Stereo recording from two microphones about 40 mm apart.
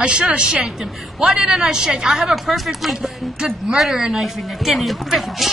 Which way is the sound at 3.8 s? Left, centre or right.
Centre.